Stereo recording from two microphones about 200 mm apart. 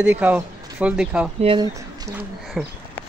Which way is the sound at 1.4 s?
25° right (ahead or behind).